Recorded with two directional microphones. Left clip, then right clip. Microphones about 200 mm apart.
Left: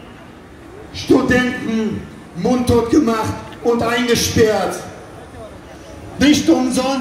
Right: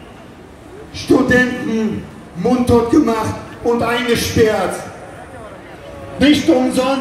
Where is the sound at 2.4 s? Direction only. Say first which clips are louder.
Right 2 dB; 40° left (ahead or behind).